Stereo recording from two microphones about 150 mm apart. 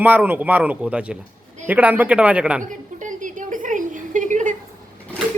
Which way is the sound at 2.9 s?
60° right (ahead or behind).